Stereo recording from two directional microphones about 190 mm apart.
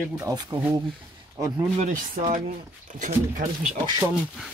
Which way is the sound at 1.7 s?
40° right (ahead or behind).